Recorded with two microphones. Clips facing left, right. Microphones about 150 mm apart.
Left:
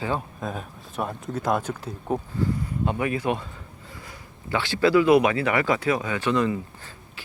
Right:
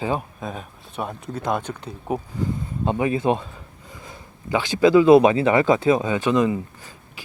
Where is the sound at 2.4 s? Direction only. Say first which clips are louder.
Left 1 dB; 15° right (ahead or behind).